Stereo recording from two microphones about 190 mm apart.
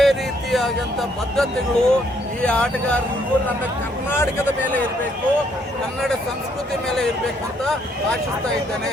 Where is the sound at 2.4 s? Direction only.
5° left (ahead or behind).